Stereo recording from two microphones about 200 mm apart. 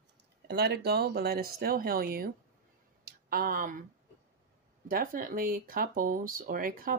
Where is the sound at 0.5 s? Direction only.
55° right (ahead or behind).